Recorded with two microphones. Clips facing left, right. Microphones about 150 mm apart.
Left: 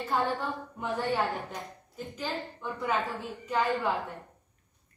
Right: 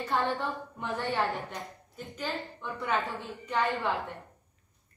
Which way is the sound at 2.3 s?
20° left (ahead or behind).